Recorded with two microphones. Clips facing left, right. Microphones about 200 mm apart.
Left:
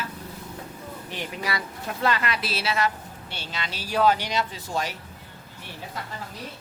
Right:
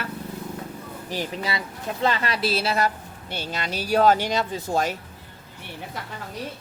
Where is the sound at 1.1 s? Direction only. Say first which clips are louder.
Right 3 dB; 35° right (ahead or behind).